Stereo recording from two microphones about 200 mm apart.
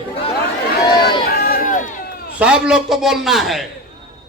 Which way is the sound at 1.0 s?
50° left (ahead or behind).